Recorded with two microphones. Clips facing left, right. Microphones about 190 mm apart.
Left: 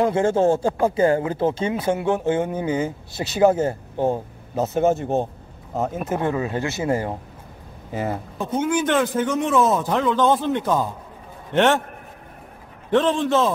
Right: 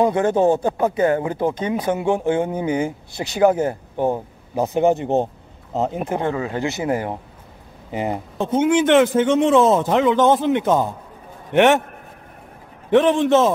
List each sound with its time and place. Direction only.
0.3 s speech: 20° right (ahead or behind)
0.8 s speech: 30° left (ahead or behind)
1.4 s speech: 15° right (ahead or behind)
12.9 s speech: 15° right (ahead or behind)